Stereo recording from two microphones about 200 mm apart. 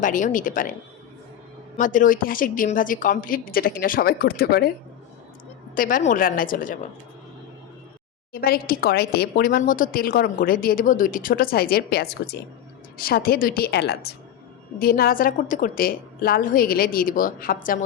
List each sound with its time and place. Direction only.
0.0 s a woman's voice: 40° left (ahead or behind)
5.7 s speech: 45° left (ahead or behind)
8.3 s speech: 50° left (ahead or behind)